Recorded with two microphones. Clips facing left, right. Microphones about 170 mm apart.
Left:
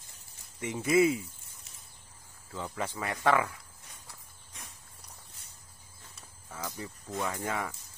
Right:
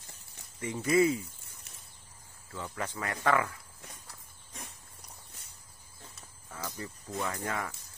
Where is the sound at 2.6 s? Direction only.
20° left (ahead or behind).